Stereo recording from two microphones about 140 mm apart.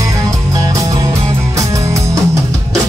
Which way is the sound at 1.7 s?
25° right (ahead or behind).